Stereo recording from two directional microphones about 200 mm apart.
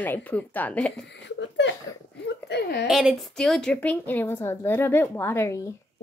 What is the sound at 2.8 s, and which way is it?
A woman's voice, centre (ahead or behind).